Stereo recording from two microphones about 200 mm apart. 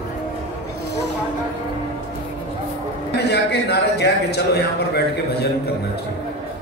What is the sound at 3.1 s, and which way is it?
A man's voice, 55° left (ahead or behind).